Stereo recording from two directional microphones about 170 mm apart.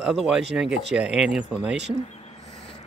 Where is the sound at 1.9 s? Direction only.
40° left (ahead or behind).